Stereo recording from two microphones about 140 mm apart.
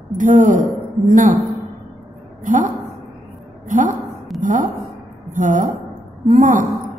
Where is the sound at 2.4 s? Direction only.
70° right (ahead or behind).